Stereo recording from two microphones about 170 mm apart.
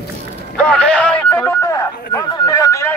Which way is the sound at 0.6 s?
5° left (ahead or behind).